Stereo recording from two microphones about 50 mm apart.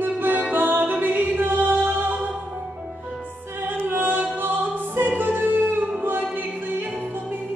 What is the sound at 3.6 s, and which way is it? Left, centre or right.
Music, right.